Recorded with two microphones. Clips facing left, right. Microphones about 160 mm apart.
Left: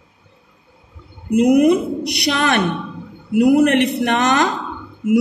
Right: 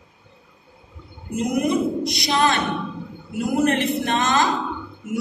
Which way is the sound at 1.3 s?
60° left (ahead or behind).